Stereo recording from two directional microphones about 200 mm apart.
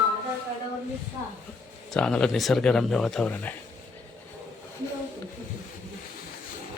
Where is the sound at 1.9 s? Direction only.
5° left (ahead or behind).